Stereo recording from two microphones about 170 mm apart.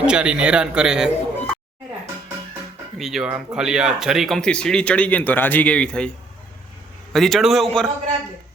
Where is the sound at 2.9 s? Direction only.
Centre (ahead or behind).